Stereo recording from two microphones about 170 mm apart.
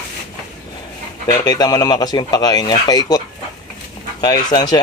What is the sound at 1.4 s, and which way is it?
Speech, 20° left (ahead or behind).